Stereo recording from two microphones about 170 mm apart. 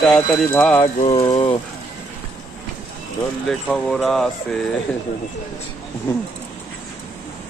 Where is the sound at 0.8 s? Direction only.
35° left (ahead or behind).